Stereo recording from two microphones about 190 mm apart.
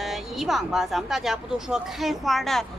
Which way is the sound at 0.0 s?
Centre (ahead or behind).